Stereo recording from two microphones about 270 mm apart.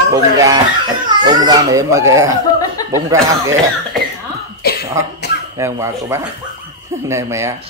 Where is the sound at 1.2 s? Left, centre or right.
Centre.